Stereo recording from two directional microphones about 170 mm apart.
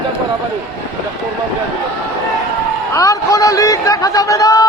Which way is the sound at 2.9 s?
20° left (ahead or behind).